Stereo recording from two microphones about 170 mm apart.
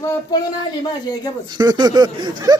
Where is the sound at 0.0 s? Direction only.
25° left (ahead or behind).